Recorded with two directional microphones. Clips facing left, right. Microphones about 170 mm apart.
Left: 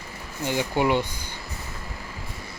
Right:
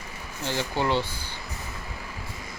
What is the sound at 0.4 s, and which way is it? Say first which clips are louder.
Speech: left 4 dB; 15° left (ahead or behind).